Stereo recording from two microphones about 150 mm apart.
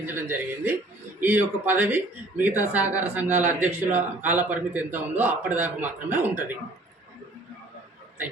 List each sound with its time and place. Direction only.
0.0 s a man's voice: 15° right (ahead or behind)